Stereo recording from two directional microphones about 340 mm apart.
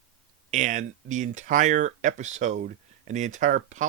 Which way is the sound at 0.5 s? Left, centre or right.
Right.